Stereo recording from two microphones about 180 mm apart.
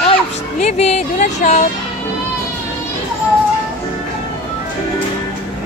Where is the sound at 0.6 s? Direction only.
35° left (ahead or behind).